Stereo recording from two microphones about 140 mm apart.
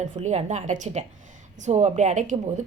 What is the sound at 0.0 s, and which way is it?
Speech, 55° right (ahead or behind).